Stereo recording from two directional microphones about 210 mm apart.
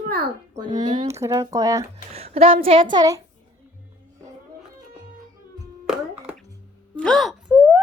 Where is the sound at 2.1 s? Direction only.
30° right (ahead or behind).